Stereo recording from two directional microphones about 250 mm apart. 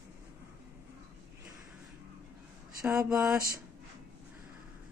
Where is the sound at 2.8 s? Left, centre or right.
Centre.